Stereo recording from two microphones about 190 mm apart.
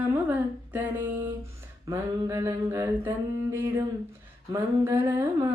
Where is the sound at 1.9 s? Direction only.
15° right (ahead or behind).